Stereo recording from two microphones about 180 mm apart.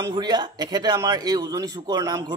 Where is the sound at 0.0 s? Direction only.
25° right (ahead or behind).